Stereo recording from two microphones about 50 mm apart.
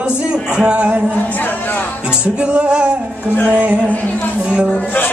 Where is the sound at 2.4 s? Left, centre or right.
Right.